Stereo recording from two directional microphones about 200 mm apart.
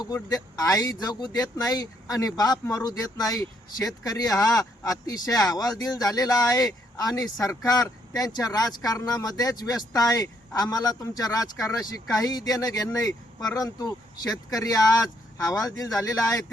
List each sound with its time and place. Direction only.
0.0 s speech: 15° left (ahead or behind)